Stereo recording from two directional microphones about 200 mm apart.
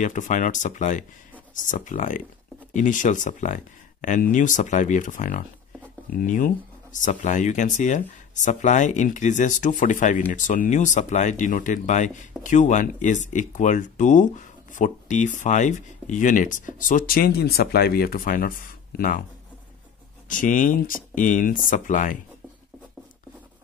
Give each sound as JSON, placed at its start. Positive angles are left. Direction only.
{"t": 0.0, "sound": "speech", "side_deg": 40}
{"t": 20.2, "sound": "speech", "side_deg": 40}